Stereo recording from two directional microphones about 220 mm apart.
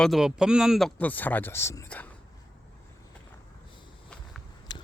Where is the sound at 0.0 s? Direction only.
Centre (ahead or behind).